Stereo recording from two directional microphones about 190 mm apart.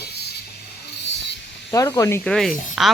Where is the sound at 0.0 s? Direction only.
60° left (ahead or behind).